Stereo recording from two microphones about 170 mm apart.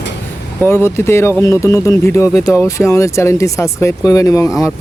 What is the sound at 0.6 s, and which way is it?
Speech, 15° left (ahead or behind).